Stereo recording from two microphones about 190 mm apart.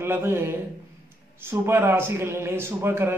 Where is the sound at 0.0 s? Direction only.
10° right (ahead or behind).